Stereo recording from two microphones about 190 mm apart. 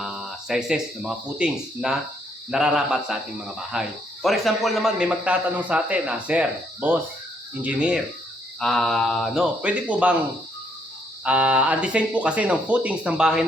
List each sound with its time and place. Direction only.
0.0 s speech: centre (ahead or behind)
11.2 s speech: 5° right (ahead or behind)